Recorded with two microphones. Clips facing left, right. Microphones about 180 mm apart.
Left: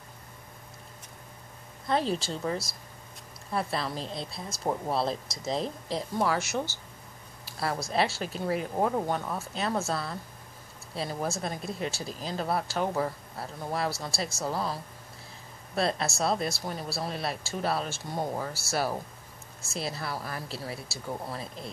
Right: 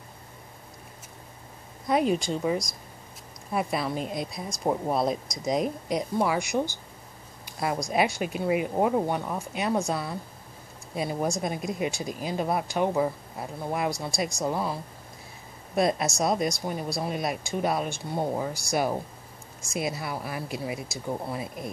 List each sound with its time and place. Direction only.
2.3 s speech: 10° right (ahead or behind)